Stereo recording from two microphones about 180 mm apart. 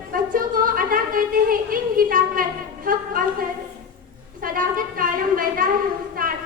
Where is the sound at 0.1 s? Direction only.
50° right (ahead or behind).